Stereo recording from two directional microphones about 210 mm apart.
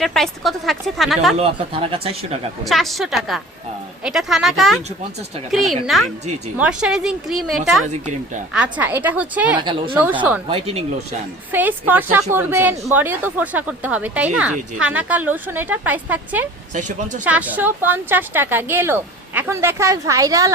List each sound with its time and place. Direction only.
0.0 s a woman's voice: centre (ahead or behind)
1.4 s speech: 25° right (ahead or behind)
2.6 s a woman's voice: centre (ahead or behind)
9.6 s speech: 25° right (ahead or behind)
9.9 s speech: 10° right (ahead or behind)
10.5 s speech: 30° right (ahead or behind)
11.5 s speech: 10° right (ahead or behind)
16.7 s speech: 35° right (ahead or behind)
17.2 s speech: 5° right (ahead or behind)